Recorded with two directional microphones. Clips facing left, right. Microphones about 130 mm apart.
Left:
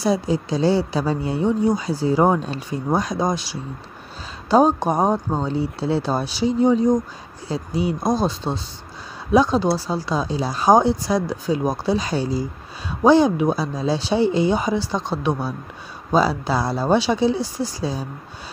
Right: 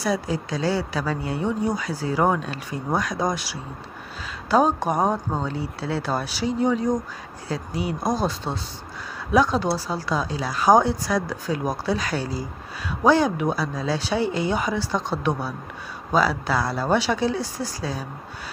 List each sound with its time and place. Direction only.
0.0 s speech: 25° left (ahead or behind)